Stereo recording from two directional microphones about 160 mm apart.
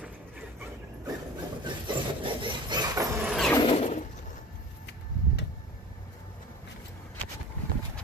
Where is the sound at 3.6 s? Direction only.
40° left (ahead or behind).